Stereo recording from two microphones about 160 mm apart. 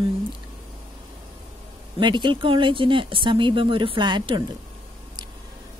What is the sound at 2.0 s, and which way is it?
Speech, 30° right (ahead or behind).